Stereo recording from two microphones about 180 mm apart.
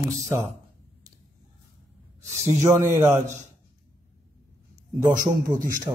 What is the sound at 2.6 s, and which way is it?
Speech, 15° right (ahead or behind).